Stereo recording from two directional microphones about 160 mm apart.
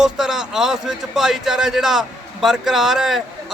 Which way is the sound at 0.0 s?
Centre (ahead or behind).